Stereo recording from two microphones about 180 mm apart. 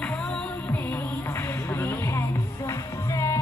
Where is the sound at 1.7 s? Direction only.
10° left (ahead or behind).